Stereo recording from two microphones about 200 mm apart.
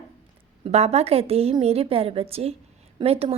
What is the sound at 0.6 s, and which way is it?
A woman's voice, 30° right (ahead or behind).